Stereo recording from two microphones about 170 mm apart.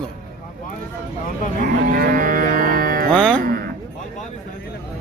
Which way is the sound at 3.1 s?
5° left (ahead or behind).